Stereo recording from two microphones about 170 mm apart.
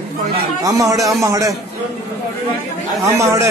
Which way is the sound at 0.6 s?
20° right (ahead or behind).